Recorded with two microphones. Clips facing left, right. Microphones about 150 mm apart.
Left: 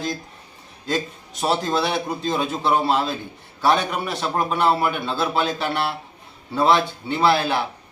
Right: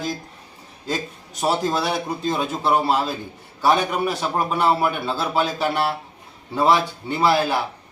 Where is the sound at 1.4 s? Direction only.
5° right (ahead or behind).